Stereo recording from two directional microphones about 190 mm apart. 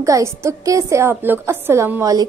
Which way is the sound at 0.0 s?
15° right (ahead or behind).